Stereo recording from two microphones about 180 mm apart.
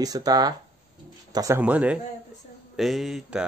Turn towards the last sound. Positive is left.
turn(degrees=0)  # may be behind; listen again after turning